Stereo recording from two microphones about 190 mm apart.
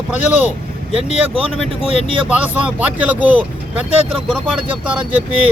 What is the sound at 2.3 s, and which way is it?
Speech, 5° right (ahead or behind).